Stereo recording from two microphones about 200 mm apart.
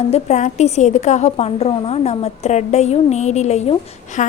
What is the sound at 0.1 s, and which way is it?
A woman's voice, 35° left (ahead or behind).